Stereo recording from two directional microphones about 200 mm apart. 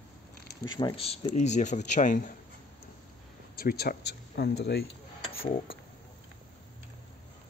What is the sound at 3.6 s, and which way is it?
Speech, 50° left (ahead or behind).